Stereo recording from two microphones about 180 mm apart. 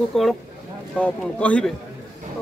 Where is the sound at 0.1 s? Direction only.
Centre (ahead or behind).